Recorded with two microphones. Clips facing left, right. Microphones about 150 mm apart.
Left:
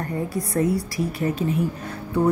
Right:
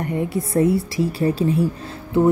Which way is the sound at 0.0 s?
25° right (ahead or behind).